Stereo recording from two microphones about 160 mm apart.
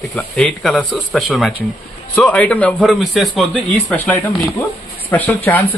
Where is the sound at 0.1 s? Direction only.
5° left (ahead or behind).